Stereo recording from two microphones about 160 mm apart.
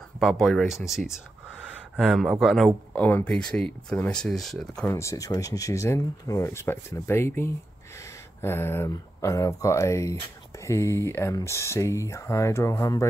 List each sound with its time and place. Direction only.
0.2 s speech: centre (ahead or behind)
4.9 s speech: 20° left (ahead or behind)